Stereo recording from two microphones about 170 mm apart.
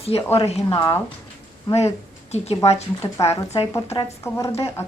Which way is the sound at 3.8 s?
35° left (ahead or behind).